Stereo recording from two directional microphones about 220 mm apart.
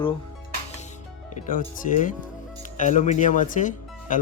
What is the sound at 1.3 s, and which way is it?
Speech, 35° left (ahead or behind).